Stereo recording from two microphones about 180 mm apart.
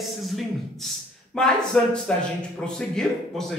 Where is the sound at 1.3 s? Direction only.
5° left (ahead or behind).